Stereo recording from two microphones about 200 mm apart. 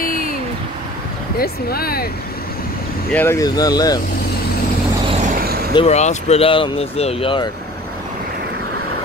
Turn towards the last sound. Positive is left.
turn(degrees=25)  # may be behind; listen again after turning